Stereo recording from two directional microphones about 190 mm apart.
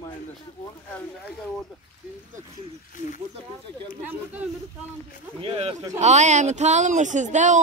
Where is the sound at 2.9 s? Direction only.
45° left (ahead or behind).